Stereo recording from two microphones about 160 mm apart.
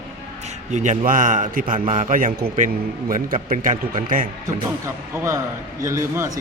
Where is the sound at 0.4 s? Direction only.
50° right (ahead or behind).